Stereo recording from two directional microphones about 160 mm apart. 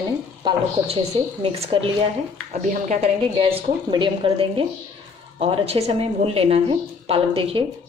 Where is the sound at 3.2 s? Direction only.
35° right (ahead or behind).